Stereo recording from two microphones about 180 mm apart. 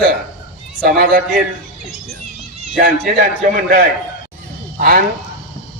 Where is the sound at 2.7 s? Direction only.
55° right (ahead or behind).